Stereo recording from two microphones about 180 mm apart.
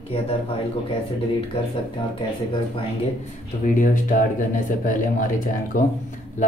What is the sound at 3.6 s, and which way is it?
Speech, 45° left (ahead or behind).